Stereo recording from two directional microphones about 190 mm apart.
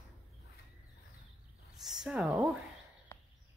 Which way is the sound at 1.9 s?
5° right (ahead or behind).